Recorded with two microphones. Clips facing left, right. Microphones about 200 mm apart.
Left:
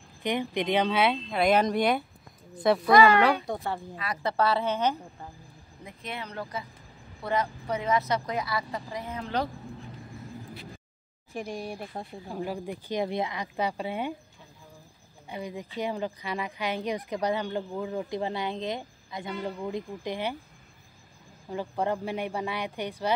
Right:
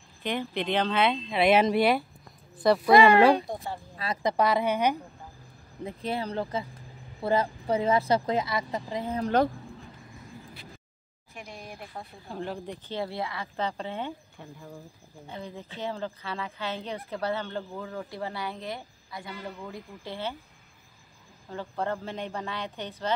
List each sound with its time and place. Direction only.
0.2 s speech: 15° left (ahead or behind)
1.3 s speech: 5° right (ahead or behind)
2.9 s speech: 25° right (ahead or behind)
3.4 s a woman's voice: 65° left (ahead or behind)
4.2 s a woman's voice: 15° right (ahead or behind)
5.9 s speech: 30° right (ahead or behind)
11.3 s speech: 35° left (ahead or behind)
12.3 s speech: 10° left (ahead or behind)
15.2 s speech: 10° left (ahead or behind)
21.5 s speech: 15° left (ahead or behind)